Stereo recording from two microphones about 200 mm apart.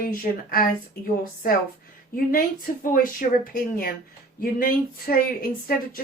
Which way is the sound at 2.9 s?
45° left (ahead or behind).